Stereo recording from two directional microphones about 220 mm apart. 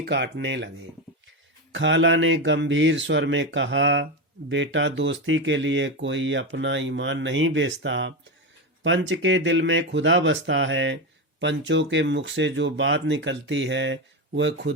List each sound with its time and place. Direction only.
0.0 s speech: 50° right (ahead or behind)
1.7 s speech: 55° right (ahead or behind)